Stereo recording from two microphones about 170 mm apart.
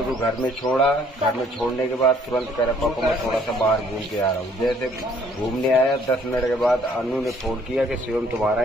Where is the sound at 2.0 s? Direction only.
5° left (ahead or behind).